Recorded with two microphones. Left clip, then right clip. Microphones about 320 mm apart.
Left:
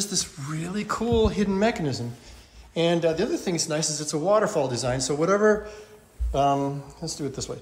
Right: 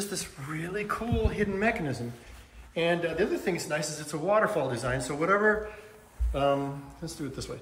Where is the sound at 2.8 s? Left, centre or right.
Centre.